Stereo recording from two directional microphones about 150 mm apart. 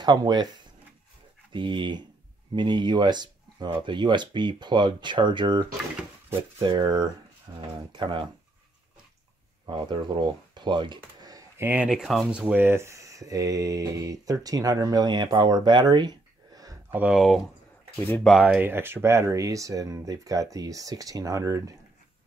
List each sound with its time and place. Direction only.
0.0 s speech: 25° right (ahead or behind)
1.5 s speech: 35° right (ahead or behind)
9.7 s speech: 30° right (ahead or behind)
16.9 s speech: 10° right (ahead or behind)